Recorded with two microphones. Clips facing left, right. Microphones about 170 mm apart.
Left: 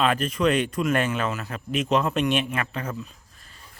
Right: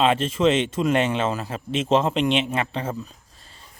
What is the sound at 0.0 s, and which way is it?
Speech, 25° right (ahead or behind).